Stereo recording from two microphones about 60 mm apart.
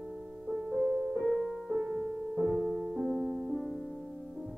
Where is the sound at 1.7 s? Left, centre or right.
Centre.